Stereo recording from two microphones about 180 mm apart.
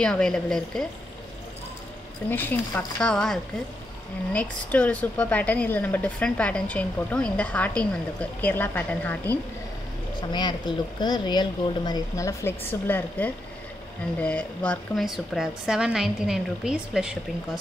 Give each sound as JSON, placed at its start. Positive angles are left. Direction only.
{"t": 0.0, "sound": "a woman's voice", "side_deg": 5}
{"t": 2.2, "sound": "a woman's voice", "side_deg": 10}
{"t": 10.7, "sound": "a woman's voice", "side_deg": 25}